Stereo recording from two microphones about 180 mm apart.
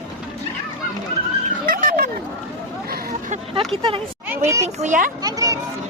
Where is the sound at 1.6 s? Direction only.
50° right (ahead or behind).